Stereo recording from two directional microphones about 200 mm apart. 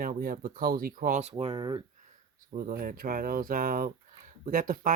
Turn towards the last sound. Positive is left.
turn(degrees=-45)  # may be behind; listen again after turning